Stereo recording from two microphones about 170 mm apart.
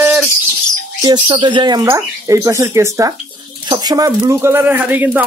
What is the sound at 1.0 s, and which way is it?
Speech, 25° right (ahead or behind).